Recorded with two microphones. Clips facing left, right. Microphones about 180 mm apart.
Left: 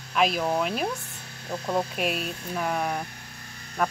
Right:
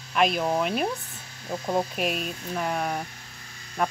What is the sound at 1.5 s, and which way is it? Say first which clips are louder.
Speech: right 1 dB; 15° right (ahead or behind).